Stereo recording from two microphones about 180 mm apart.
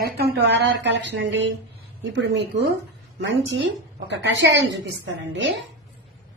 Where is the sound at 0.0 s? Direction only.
65° right (ahead or behind).